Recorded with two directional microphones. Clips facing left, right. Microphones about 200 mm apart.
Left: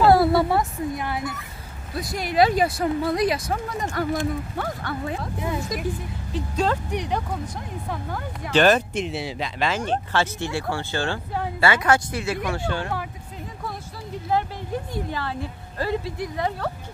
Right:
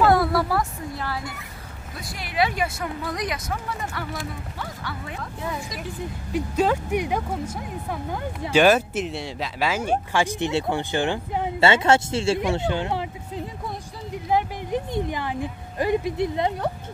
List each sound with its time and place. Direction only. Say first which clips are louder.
0.0 s speech: left 3 dB; 30° left (ahead or behind)
2.0 s speech: left 5 dB; 40° left (ahead or behind)
5.0 s speech: left 5 dB; 35° left (ahead or behind)
6.3 s speech: right 2 dB; 10° right (ahead or behind)
14.3 s speech: right 2 dB; 20° right (ahead or behind)